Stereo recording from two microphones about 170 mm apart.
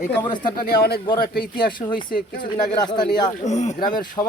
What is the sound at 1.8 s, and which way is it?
Speech, 30° left (ahead or behind).